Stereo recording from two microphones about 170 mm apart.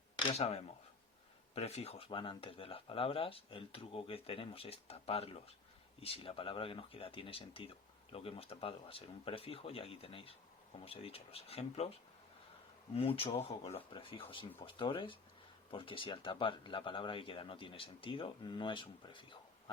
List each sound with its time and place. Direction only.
0.2 s speech: 30° left (ahead or behind)